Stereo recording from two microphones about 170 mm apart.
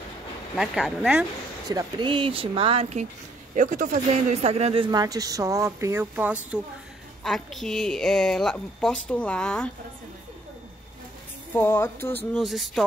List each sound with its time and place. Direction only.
0.6 s a woman's voice: 5° right (ahead or behind)
1.7 s speech: 25° right (ahead or behind)
3.5 s a man's voice: 50° right (ahead or behind); by 9.7 s 5° left (ahead or behind)
11.5 s speech: 15° left (ahead or behind)